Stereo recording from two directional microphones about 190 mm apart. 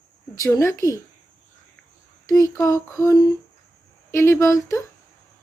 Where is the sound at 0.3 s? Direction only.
20° left (ahead or behind).